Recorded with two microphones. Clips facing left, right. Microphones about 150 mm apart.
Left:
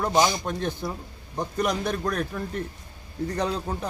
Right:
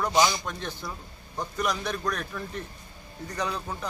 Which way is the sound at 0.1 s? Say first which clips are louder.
Left 2 dB; 50° left (ahead or behind).